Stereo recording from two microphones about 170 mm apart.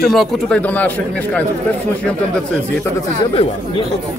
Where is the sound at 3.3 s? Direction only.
35° left (ahead or behind).